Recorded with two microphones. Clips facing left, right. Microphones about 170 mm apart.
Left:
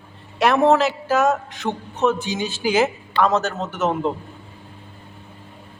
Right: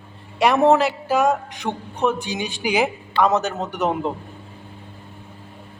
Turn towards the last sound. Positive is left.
turn(degrees=-15)  # may be behind; listen again after turning